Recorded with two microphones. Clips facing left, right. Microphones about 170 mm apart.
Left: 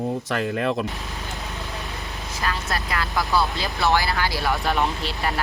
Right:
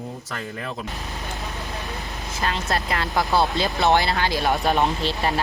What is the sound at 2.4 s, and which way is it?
Speech, 25° right (ahead or behind).